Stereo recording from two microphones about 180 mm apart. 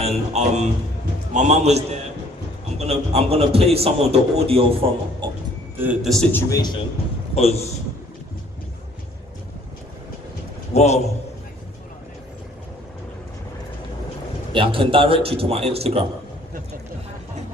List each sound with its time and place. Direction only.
0.0 s a man's voice: 35° right (ahead or behind)
5.7 s a man's voice: 10° right (ahead or behind)
6.3 s a man's voice: 20° left (ahead or behind)
7.3 s a man's voice: 35° left (ahead or behind)
10.8 s a man's voice: 40° left (ahead or behind)
14.5 s speech: 30° right (ahead or behind)